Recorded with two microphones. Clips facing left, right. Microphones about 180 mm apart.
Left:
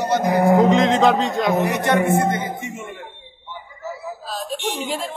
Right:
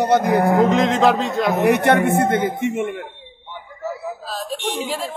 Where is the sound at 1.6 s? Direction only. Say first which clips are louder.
Right 4 dB; 60° right (ahead or behind).